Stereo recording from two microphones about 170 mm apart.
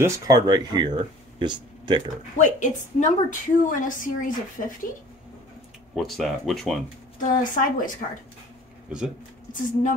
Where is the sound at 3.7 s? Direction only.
50° left (ahead or behind).